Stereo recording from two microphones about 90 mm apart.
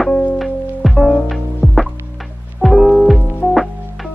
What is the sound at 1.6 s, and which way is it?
Music, 15° left (ahead or behind).